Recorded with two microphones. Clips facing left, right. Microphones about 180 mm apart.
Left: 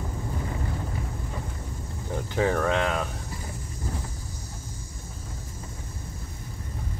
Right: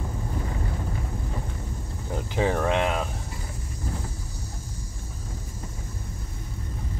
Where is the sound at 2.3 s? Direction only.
15° right (ahead or behind).